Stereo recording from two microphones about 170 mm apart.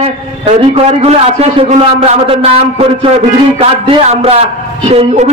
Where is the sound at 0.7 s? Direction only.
40° right (ahead or behind).